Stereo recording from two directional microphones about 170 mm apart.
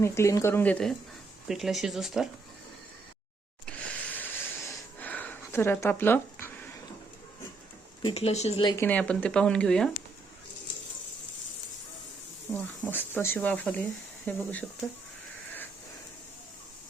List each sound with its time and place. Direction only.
0.0 s speech: 15° left (ahead or behind); by 2.3 s centre (ahead or behind)
3.7 s a sound: 10° left (ahead or behind)
8.0 s speech: 40° left (ahead or behind)
8.8 s speech: 10° left (ahead or behind)
12.5 s speech: 10° left (ahead or behind)